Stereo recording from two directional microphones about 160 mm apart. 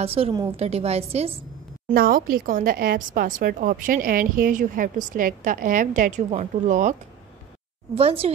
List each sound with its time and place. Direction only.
0.0 s a woman's voice: 35° right (ahead or behind)
1.9 s a woman's voice: 60° right (ahead or behind)
7.9 s a woman's voice: 40° right (ahead or behind)